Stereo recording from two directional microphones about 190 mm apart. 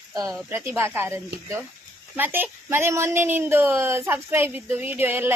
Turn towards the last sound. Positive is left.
turn(degrees=-10)  # may be behind; listen again after turning